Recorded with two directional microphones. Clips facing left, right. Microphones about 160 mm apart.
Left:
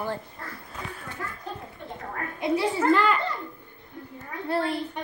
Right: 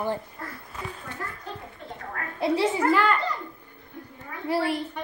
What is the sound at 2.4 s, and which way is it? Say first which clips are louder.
Speech: right 2 dB; 30° right (ahead or behind).